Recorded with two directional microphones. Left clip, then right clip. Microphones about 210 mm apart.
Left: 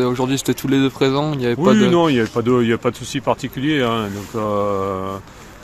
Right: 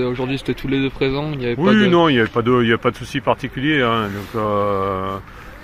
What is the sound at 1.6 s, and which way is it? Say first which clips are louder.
Speech: right 1 dB; centre (ahead or behind).